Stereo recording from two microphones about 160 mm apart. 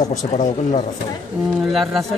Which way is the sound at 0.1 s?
50° left (ahead or behind).